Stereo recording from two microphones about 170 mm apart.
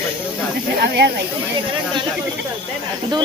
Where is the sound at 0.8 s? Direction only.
70° right (ahead or behind).